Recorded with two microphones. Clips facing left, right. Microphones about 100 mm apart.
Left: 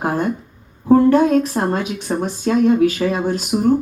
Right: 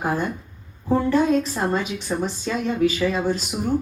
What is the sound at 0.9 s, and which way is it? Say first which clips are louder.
Speech: left 7 dB; 55° left (ahead or behind).